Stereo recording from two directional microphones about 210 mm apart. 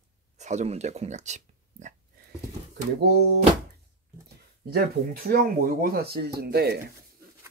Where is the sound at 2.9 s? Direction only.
50° right (ahead or behind).